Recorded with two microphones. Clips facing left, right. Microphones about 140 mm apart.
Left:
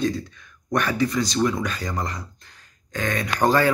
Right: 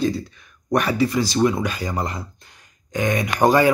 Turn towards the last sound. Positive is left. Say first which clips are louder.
# right 3 dB
turn(degrees=-15)  # may be behind; listen again after turning